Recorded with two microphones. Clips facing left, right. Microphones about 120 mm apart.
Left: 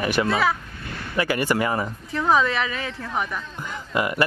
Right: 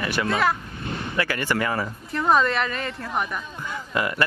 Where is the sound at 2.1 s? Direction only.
Centre (ahead or behind).